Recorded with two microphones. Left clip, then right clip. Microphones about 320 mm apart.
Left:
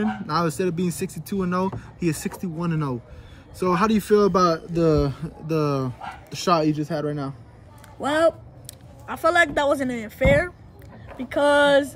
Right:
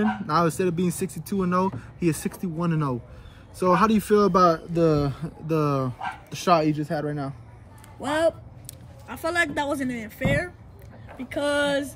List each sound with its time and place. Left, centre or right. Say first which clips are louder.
0.3 s speech: right 1 dB; centre
8.0 s speech: left 3 dB; centre